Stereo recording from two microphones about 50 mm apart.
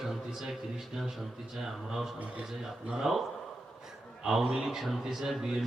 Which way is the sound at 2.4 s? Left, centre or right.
Centre.